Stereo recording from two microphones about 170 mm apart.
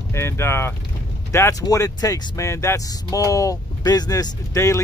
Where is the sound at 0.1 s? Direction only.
15° left (ahead or behind).